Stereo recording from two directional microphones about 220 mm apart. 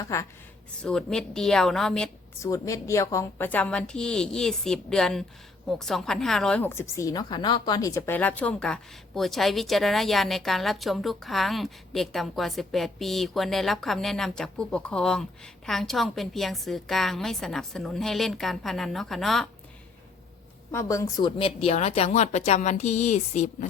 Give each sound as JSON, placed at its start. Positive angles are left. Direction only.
{"t": 0.0, "sound": "a woman's voice", "side_deg": 10}
{"t": 2.4, "sound": "a woman's voice", "side_deg": 15}
{"t": 20.7, "sound": "a woman's voice", "side_deg": 15}